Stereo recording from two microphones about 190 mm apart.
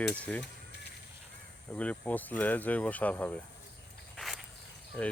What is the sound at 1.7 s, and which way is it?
Speech, 10° left (ahead or behind).